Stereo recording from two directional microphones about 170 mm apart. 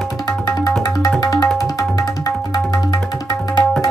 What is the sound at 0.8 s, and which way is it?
Music, 20° left (ahead or behind).